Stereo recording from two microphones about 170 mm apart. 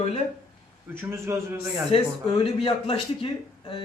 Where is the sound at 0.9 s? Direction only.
15° right (ahead or behind).